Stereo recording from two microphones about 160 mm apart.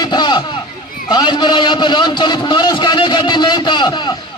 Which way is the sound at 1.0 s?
30° left (ahead or behind).